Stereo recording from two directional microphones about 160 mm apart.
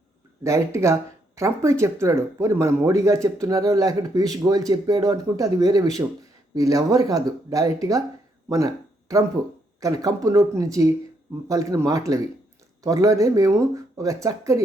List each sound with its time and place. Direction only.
0.4 s speech: 20° right (ahead or behind)
8.4 s a sound: 20° right (ahead or behind)
9.8 s speech: 20° right (ahead or behind)